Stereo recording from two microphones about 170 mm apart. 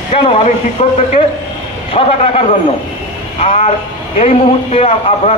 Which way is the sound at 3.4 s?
35° left (ahead or behind).